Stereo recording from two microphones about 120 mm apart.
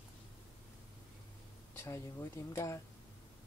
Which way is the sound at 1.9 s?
25° left (ahead or behind).